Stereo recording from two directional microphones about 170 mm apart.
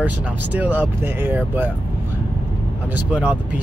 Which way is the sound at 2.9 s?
5° right (ahead or behind).